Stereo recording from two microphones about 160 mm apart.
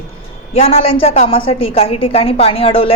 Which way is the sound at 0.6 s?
40° left (ahead or behind).